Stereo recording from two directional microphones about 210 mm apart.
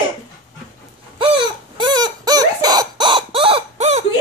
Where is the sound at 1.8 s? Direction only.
20° right (ahead or behind).